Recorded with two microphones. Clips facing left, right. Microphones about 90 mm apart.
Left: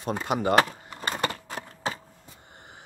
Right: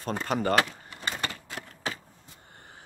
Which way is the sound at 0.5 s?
40° left (ahead or behind).